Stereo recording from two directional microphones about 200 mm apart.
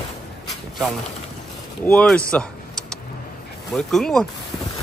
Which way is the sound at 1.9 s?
5° left (ahead or behind).